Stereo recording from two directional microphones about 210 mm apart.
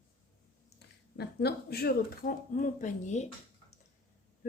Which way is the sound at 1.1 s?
50° left (ahead or behind).